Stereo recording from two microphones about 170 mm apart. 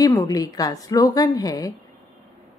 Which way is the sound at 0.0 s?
15° left (ahead or behind).